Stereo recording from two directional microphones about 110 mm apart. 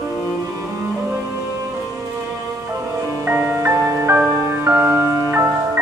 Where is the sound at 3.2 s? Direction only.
25° right (ahead or behind).